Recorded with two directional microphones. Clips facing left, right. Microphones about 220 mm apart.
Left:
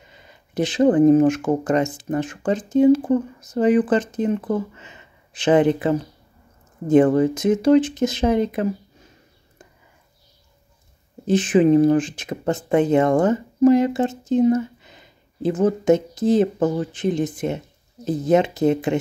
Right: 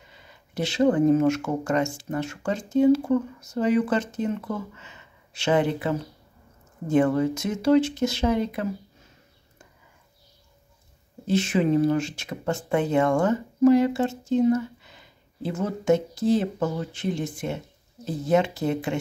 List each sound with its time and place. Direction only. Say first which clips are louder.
0.1 s a sound: left 7 dB; 20° left (ahead or behind)
0.9 s speech: left 6 dB; 15° left (ahead or behind)
7.2 s speech: left 7 dB; 20° left (ahead or behind)
11.2 s speech: left 7 dB; 15° left (ahead or behind)